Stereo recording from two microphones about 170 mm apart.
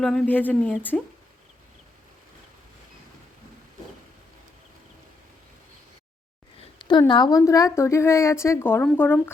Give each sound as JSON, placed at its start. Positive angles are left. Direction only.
{"t": 0.0, "sound": "a woman's voice", "side_deg": 5}
{"t": 6.7, "sound": "a sound", "side_deg": 25}
{"t": 7.1, "sound": "a woman's voice", "side_deg": 25}